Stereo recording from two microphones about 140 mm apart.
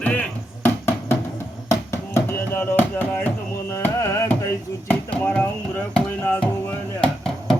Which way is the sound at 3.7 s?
20° left (ahead or behind).